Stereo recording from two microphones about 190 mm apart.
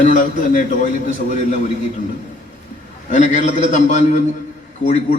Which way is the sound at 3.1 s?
40° left (ahead or behind).